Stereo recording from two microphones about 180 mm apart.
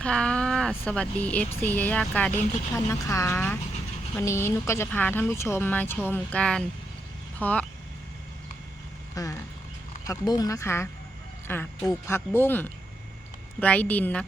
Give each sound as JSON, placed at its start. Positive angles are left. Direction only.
{"t": 0.0, "sound": "speech", "side_deg": 5}
{"t": 9.1, "sound": "speech", "side_deg": 20}